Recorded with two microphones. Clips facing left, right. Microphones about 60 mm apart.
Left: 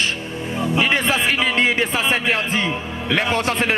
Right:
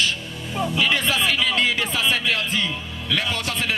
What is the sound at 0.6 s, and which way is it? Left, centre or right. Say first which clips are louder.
Speech: left 2 dB; left.